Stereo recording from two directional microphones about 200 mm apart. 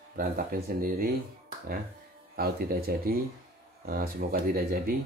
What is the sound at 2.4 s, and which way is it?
Speech, 50° right (ahead or behind).